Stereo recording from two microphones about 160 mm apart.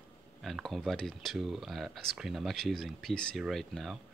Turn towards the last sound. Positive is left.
turn(degrees=0)  # may be behind; listen again after turning